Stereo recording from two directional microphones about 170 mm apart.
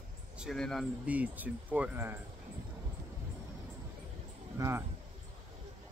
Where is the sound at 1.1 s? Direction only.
10° right (ahead or behind).